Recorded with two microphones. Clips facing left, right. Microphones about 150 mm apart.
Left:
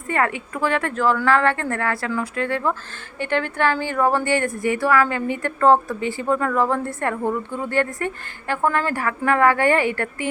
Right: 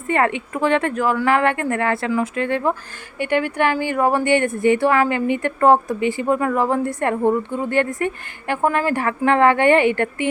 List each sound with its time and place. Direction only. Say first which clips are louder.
0.1 s speech: right 3 dB; 20° right (ahead or behind)